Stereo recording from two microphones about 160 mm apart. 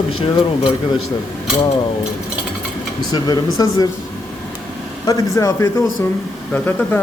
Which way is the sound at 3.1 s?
25° left (ahead or behind).